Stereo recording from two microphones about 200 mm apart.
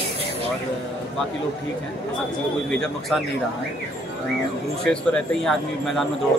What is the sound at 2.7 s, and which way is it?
Speech, 5° left (ahead or behind).